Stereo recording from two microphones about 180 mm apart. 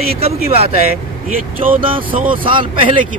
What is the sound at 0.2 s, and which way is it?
Speech, 35° right (ahead or behind).